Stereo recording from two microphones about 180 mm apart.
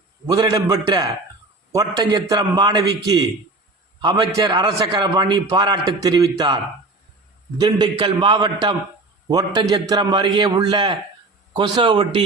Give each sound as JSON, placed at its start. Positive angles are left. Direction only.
{"t": 0.3, "sound": "a man's voice", "side_deg": -20}
{"t": 7.6, "sound": "a man's voice", "side_deg": -25}